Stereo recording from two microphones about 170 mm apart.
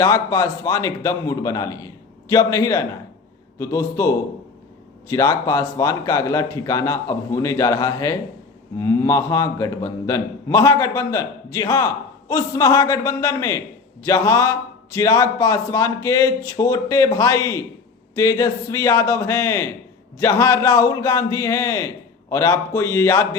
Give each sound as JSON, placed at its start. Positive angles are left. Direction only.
{"t": 0.0, "sound": "a man's voice", "side_deg": 20}